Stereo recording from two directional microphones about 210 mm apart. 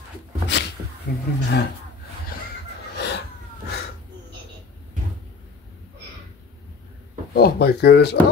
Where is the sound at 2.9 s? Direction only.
50° left (ahead or behind).